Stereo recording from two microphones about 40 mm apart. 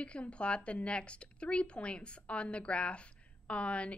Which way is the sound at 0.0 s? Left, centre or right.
Left.